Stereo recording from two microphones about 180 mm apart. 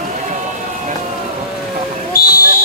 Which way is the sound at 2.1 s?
55° left (ahead or behind).